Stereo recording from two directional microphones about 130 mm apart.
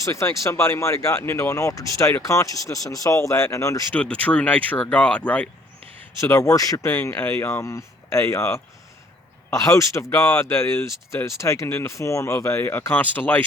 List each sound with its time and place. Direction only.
0.0 s speech: 20° left (ahead or behind)
3.9 s speech: 10° left (ahead or behind)
6.1 s speech: 20° left (ahead or behind)